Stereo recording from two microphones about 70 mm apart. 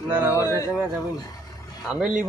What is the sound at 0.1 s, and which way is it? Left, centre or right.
Speech, right.